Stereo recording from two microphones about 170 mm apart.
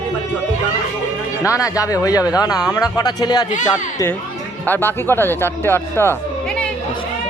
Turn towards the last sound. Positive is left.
turn(degrees=15)  # may be behind; listen again after turning